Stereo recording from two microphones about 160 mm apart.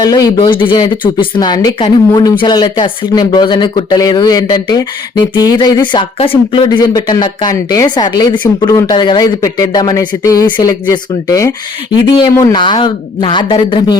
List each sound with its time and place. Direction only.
0.0 s speech: 25° left (ahead or behind)